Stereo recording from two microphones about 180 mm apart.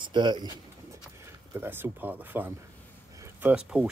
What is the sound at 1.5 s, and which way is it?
Speech, 10° right (ahead or behind).